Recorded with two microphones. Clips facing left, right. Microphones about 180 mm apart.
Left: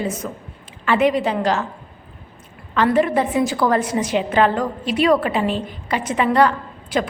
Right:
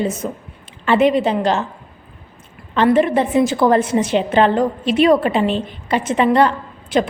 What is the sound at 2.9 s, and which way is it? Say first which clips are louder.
A woman's voice: right 3 dB; 25° right (ahead or behind).